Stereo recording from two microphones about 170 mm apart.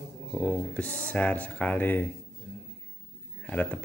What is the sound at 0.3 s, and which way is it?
A man's voice, 5° left (ahead or behind).